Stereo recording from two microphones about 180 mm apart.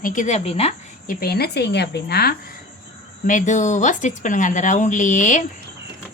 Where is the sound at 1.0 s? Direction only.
55° left (ahead or behind).